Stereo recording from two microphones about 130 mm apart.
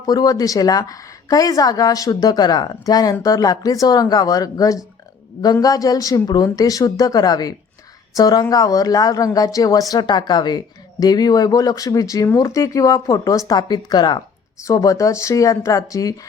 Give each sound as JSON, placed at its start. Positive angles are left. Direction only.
{"t": 0.0, "sound": "a woman's voice", "side_deg": 30}